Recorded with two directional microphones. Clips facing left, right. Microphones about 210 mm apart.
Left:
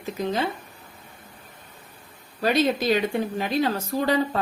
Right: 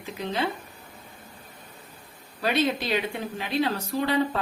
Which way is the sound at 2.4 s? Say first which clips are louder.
Left 3 dB; 40° left (ahead or behind).